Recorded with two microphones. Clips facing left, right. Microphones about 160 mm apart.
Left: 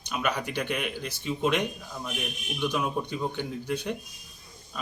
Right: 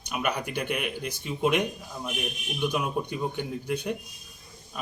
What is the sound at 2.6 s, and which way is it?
Speech, 10° right (ahead or behind).